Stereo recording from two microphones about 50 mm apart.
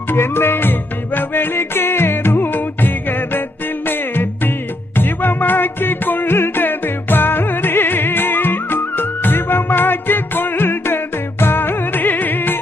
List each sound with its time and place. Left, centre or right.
0.1 s music: left